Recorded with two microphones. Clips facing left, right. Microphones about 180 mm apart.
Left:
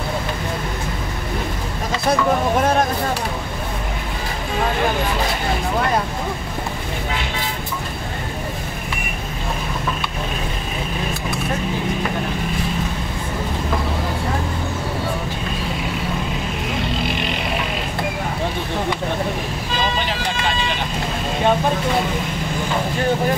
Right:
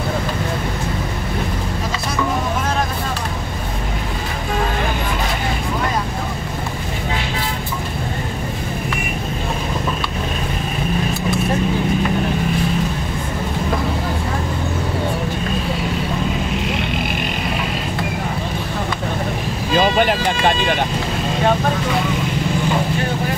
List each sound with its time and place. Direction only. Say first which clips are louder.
19.8 s vehicle: right 8 dB; 55° right (ahead or behind)